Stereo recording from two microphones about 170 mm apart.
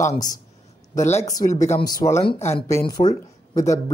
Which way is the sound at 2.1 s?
40° left (ahead or behind).